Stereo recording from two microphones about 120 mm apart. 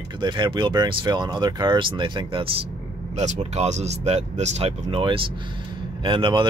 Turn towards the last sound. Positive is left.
turn(degrees=-45)  # may be behind; listen again after turning